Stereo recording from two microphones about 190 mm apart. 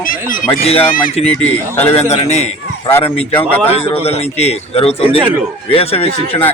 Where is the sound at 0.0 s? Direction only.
45° left (ahead or behind).